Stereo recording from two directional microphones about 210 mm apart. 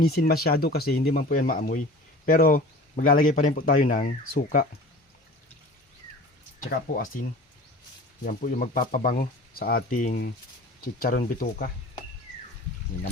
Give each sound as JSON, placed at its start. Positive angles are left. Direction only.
{"t": 0.0, "sound": "speech", "side_deg": 45}
{"t": 6.9, "sound": "speech", "side_deg": 40}
{"t": 8.2, "sound": "speech", "side_deg": 40}